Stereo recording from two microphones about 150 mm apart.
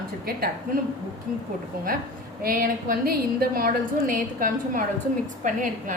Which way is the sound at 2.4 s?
70° right (ahead or behind).